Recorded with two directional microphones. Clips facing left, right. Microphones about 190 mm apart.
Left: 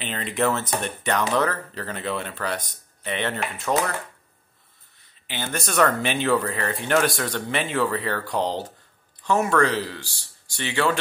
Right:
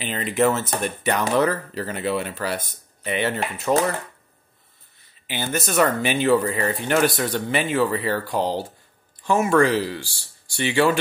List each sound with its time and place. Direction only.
0.0 s speech: 5° right (ahead or behind)
3.0 s cutlery: 5° right (ahead or behind)
3.7 s speech: 15° right (ahead or behind)
5.2 s speech: 10° right (ahead or behind)